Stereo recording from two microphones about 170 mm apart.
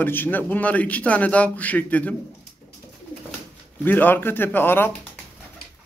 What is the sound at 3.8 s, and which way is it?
Speech, 10° left (ahead or behind).